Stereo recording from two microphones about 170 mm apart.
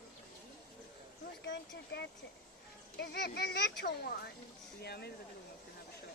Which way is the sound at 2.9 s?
75° left (ahead or behind).